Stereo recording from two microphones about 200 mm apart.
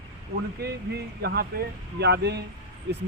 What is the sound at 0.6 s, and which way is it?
Speech, 55° right (ahead or behind).